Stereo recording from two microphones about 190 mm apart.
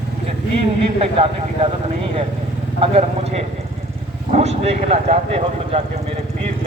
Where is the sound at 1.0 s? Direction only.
30° right (ahead or behind).